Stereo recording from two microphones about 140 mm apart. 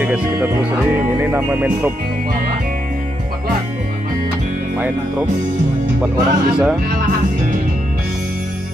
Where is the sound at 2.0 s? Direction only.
90° right.